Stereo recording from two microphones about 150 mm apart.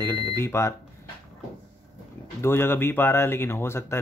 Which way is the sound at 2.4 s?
15° left (ahead or behind).